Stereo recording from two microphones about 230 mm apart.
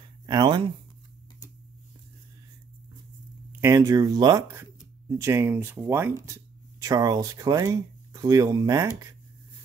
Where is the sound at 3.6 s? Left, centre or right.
Centre.